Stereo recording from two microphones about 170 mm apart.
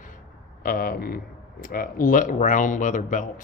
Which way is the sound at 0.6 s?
60° left (ahead or behind).